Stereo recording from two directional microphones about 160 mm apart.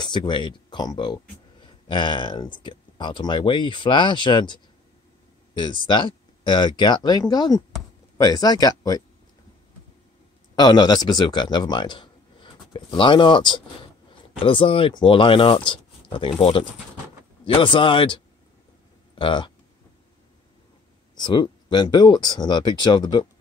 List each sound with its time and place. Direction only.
0.0 s speech: 30° left (ahead or behind)
10.5 s speech: 25° left (ahead or behind)
21.1 s speech: 25° left (ahead or behind)